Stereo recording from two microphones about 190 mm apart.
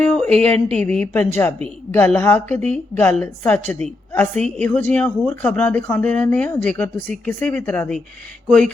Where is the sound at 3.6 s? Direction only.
35° right (ahead or behind).